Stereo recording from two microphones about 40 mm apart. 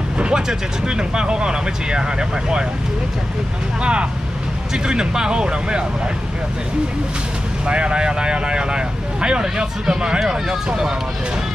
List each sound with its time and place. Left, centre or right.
0.2 s speech: centre
3.8 s speech: right
7.6 s speech: right; by 10.9 s centre